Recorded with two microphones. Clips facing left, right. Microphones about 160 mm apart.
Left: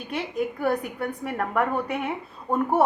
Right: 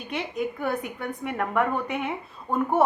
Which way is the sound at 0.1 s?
35° left (ahead or behind).